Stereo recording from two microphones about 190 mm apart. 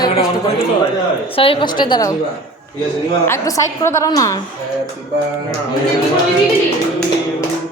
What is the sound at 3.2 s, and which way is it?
A woman's voice, 15° left (ahead or behind).